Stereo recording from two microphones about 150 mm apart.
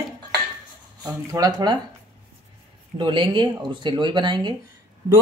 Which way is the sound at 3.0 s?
30° right (ahead or behind).